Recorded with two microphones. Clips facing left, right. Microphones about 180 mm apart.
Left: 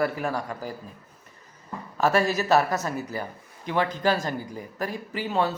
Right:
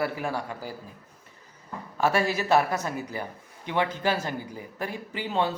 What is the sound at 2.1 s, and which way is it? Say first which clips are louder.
A man's voice: left 2 dB; 15° right (ahead or behind).